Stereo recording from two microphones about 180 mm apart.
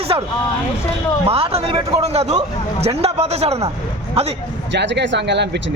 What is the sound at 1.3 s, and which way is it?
A man's voice, 35° right (ahead or behind).